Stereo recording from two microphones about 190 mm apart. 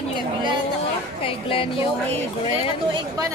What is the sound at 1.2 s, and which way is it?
A woman's voice, 30° left (ahead or behind).